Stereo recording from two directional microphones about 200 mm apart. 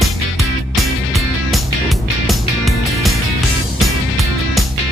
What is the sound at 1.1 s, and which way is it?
Music, centre (ahead or behind).